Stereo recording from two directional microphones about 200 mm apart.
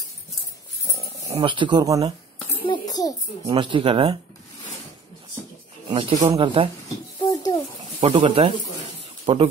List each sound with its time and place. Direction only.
0.9 s speech: 15° right (ahead or behind)
2.6 s a sound: 20° left (ahead or behind)
3.4 s speech: 25° right (ahead or behind)
5.9 s speech: 25° right (ahead or behind)
7.2 s a sound: 20° left (ahead or behind)
8.0 s speech: 25° right (ahead or behind)